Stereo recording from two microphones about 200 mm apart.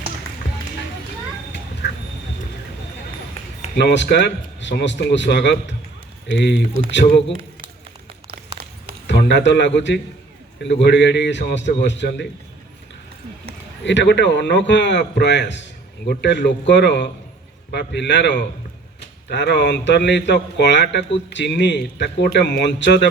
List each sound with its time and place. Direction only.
3.8 s speech: 60° left (ahead or behind)
9.0 s a man's voice: 60° left (ahead or behind)
13.8 s speech: 60° left (ahead or behind)